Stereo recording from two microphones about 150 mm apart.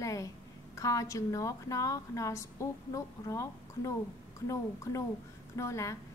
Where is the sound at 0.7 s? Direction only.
20° left (ahead or behind).